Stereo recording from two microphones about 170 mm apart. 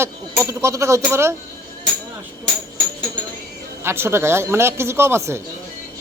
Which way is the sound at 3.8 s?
15° right (ahead or behind).